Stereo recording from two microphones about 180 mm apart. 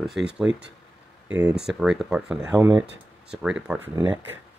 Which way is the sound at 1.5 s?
5° right (ahead or behind).